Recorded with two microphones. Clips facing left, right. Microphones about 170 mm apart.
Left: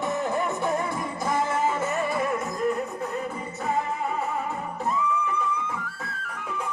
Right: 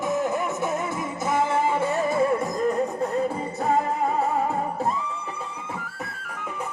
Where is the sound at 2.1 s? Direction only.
30° right (ahead or behind).